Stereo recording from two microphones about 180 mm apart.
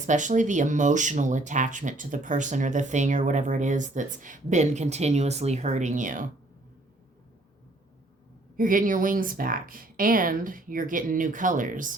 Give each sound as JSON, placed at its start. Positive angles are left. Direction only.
{"t": 0.0, "sound": "speech", "side_deg": -45}
{"t": 8.5, "sound": "speech", "side_deg": -50}